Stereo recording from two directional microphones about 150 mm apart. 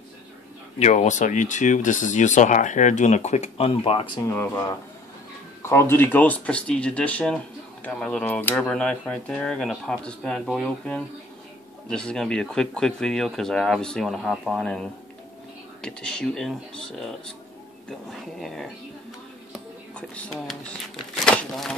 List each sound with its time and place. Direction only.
0.7 s speech: 50° left (ahead or behind)
4.3 s speech: 15° left (ahead or behind)
18.4 s speech: centre (ahead or behind)
19.5 s a sound: 5° left (ahead or behind)
21.1 s speech: 5° left (ahead or behind)